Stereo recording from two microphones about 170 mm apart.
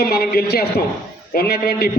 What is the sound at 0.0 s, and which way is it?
A man's voice, 65° left (ahead or behind).